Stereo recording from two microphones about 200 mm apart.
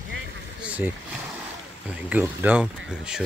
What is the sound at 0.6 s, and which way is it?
Speech, 5° right (ahead or behind).